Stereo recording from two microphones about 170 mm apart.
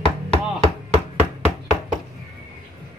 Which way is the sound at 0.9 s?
40° right (ahead or behind).